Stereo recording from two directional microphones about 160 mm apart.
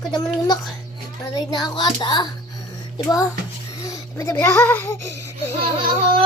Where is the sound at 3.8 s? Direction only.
20° left (ahead or behind).